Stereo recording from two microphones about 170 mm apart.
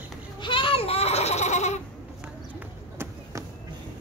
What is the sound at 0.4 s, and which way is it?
Goat, 30° left (ahead or behind).